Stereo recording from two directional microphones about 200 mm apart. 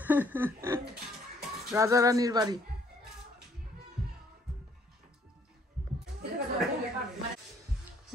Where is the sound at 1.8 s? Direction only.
15° right (ahead or behind).